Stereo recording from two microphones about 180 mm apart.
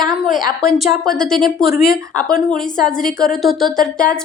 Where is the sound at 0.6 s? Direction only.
Centre (ahead or behind).